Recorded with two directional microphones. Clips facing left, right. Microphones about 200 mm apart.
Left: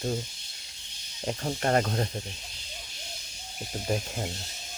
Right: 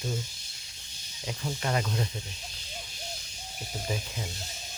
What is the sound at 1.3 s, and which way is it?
Speech, 50° left (ahead or behind).